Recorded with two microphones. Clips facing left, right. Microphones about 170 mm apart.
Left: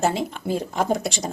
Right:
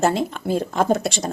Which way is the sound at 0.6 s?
55° right (ahead or behind).